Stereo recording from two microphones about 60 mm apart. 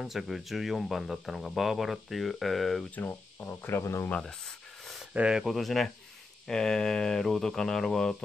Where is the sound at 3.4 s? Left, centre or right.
Left.